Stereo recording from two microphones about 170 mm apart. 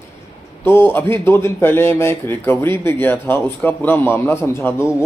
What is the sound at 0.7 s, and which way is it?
Speech, 15° left (ahead or behind).